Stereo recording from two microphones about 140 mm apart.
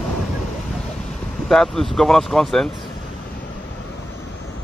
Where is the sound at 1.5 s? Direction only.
Centre (ahead or behind).